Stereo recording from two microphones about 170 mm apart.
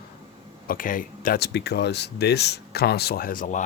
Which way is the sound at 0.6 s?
55° left (ahead or behind).